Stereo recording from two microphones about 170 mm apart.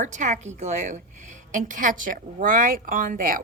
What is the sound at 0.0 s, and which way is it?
A woman's voice, 45° right (ahead or behind).